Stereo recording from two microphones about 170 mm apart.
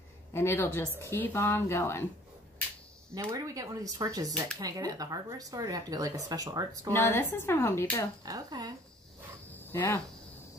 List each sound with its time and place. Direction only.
0.3 s speech: 15° left (ahead or behind)
3.2 s speech: 20° right (ahead or behind)
6.9 s speech: 15° left (ahead or behind)
8.2 s speech: 25° right (ahead or behind)
9.5 s cricket: 10° left (ahead or behind)